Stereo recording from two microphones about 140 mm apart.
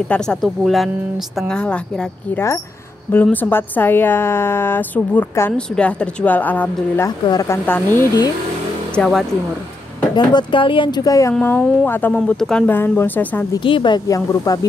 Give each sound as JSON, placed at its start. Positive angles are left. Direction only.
{"t": 0.1, "sound": "a woman's voice", "side_deg": 5}
{"t": 2.3, "sound": "a woman's voice", "side_deg": 20}
{"t": 7.2, "sound": "speech", "side_deg": 20}
{"t": 10.1, "sound": "speech", "side_deg": 35}
{"t": 11.3, "sound": "a woman's voice", "side_deg": 10}
{"t": 13.7, "sound": "speech", "side_deg": 35}